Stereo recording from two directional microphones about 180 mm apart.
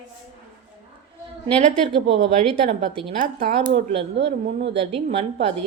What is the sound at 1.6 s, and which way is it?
A woman's voice, 40° right (ahead or behind).